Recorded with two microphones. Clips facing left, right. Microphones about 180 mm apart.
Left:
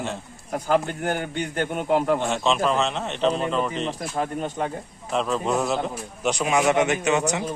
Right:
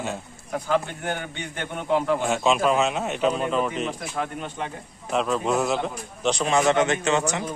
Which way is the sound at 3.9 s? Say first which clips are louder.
Left 2 dB; 35° left (ahead or behind).